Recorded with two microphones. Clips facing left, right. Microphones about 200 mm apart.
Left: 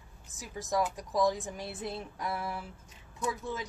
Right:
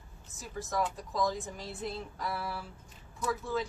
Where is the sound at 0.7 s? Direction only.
15° left (ahead or behind).